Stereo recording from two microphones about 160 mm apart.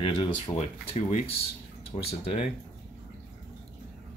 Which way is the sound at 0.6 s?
45° left (ahead or behind).